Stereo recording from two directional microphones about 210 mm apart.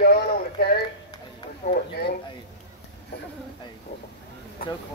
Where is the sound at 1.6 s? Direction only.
35° left (ahead or behind).